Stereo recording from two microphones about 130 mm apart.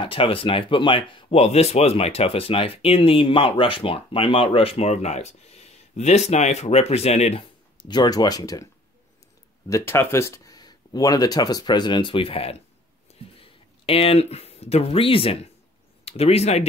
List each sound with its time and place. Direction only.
0.0 s speech: 45° left (ahead or behind)
7.7 s speech: 35° left (ahead or behind)
9.7 s speech: 20° left (ahead or behind); by 12.5 s 45° left (ahead or behind)
13.1 s a sound: 45° left (ahead or behind)
16.1 s speech: 50° left (ahead or behind)